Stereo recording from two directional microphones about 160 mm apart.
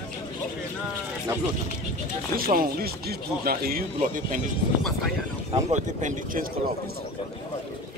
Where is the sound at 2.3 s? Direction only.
65° right (ahead or behind).